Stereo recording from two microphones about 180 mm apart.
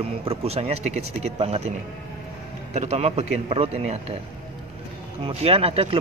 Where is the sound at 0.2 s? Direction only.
35° right (ahead or behind).